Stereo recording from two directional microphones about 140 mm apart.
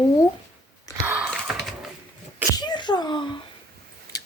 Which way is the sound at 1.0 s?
5° right (ahead or behind).